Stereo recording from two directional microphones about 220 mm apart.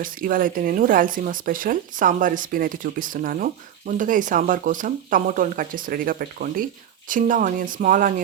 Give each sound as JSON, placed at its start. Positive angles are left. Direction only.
{"t": 0.0, "sound": "speech", "side_deg": -40}